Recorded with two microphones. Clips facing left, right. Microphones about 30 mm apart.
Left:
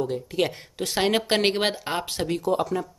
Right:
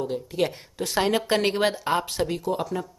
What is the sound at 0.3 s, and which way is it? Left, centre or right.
Speech, centre.